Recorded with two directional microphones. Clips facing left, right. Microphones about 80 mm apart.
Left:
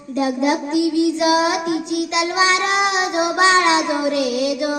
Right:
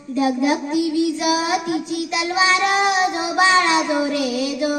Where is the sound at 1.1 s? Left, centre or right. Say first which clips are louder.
Left 3 dB; left.